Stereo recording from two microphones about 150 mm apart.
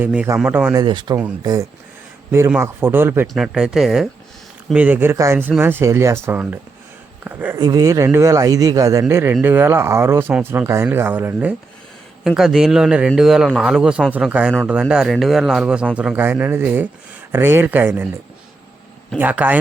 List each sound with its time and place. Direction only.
0.0 s speech: 10° right (ahead or behind)
0.7 s speech: 30° right (ahead or behind)
2.6 s speech: 15° right (ahead or behind)
3.3 s a man's voice: 5° right (ahead or behind)
7.6 s speech: 25° right (ahead or behind)
12.2 s a man's voice: centre (ahead or behind)
19.1 s speech: 10° right (ahead or behind)